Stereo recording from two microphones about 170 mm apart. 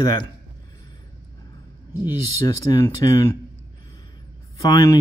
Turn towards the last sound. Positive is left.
turn(degrees=20)  # may be behind; listen again after turning